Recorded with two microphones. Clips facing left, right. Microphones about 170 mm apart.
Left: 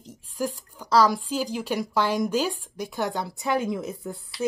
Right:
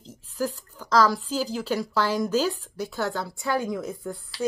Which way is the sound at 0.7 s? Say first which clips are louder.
Left 1 dB; 10° left (ahead or behind).